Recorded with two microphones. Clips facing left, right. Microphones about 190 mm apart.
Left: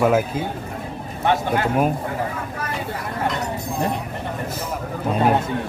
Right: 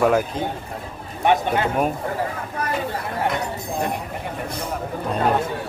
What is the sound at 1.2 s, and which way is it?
Speech, 20° right (ahead or behind).